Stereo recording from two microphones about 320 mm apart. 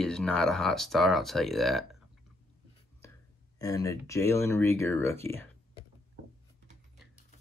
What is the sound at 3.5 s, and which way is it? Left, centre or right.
Speech, centre.